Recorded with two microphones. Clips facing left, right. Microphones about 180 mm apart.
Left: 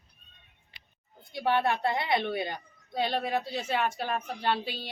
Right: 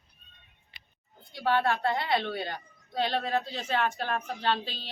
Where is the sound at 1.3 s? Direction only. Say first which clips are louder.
Even; 20° left (ahead or behind).